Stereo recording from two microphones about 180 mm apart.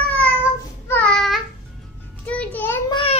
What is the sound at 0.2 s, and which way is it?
Child singing, 10° left (ahead or behind).